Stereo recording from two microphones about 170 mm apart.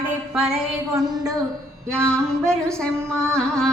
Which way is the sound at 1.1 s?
20° right (ahead or behind).